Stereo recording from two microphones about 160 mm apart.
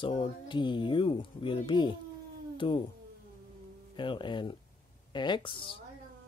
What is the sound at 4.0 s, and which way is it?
Speech, 30° left (ahead or behind).